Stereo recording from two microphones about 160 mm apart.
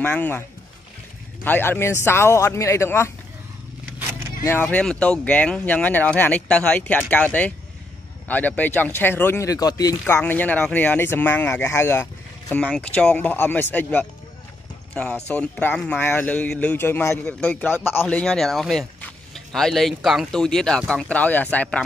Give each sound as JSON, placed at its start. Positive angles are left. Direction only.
{"t": 0.0, "sound": "speech", "side_deg": 10}
{"t": 1.4, "sound": "speech", "side_deg": 10}
{"t": 4.5, "sound": "speech", "side_deg": 10}
{"t": 15.2, "sound": "speech", "side_deg": 10}